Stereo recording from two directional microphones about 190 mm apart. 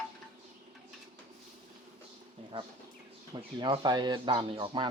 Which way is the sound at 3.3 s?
20° right (ahead or behind).